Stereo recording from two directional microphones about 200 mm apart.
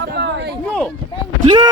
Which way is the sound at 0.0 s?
60° right (ahead or behind).